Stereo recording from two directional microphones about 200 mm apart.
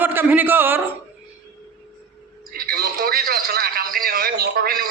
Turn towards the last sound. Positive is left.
turn(degrees=-50)  # may be behind; listen again after turning